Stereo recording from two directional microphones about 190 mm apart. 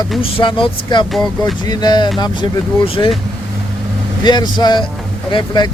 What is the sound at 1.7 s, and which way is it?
Speech, 20° left (ahead or behind).